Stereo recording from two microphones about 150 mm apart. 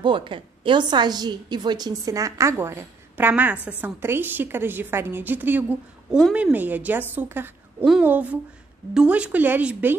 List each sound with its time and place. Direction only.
0.0 s a woman's voice: 35° right (ahead or behind); by 9.9 s 10° right (ahead or behind)